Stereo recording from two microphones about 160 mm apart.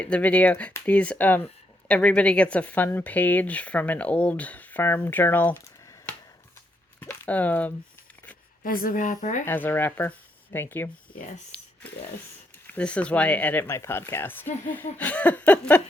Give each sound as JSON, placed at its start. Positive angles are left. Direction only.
{"t": 0.0, "sound": "speech", "side_deg": 10}
{"t": 7.0, "sound": "speech", "side_deg": 10}
{"t": 8.6, "sound": "a woman's voice", "side_deg": 65}
{"t": 9.5, "sound": "speech", "side_deg": 15}
{"t": 11.5, "sound": "a sound", "side_deg": 10}
{"t": 12.6, "sound": "speech", "side_deg": 10}